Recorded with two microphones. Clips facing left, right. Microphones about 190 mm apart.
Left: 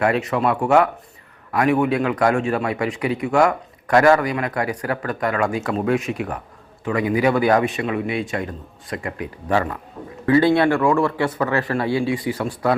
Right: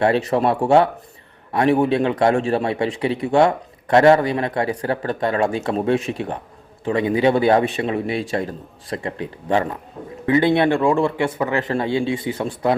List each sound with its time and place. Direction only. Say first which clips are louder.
0.0 s speech: right 2 dB; 30° right (ahead or behind)